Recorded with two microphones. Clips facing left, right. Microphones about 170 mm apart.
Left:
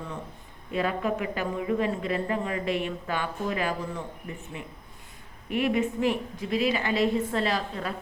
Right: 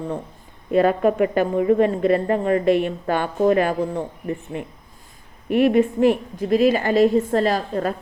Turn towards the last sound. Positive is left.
turn(degrees=-45)  # may be behind; listen again after turning